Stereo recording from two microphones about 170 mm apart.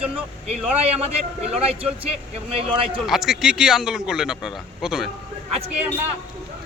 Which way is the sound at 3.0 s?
Centre (ahead or behind).